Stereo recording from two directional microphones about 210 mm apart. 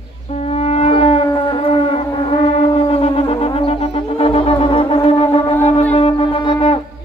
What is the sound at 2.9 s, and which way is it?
Music, 25° left (ahead or behind).